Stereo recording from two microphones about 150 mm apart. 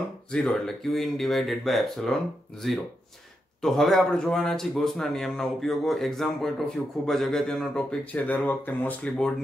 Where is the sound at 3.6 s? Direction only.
Centre (ahead or behind).